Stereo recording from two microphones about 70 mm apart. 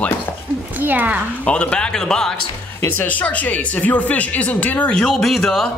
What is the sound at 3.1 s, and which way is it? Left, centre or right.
Speech, left.